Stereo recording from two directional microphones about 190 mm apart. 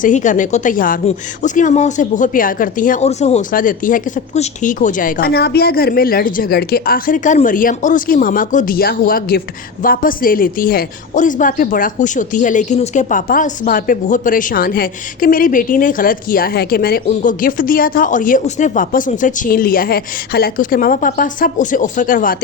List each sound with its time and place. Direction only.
0.0 s speech: 40° left (ahead or behind)